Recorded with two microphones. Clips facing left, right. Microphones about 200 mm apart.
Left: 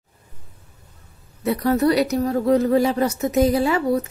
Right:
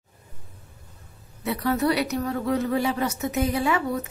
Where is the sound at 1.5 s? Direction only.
40° left (ahead or behind).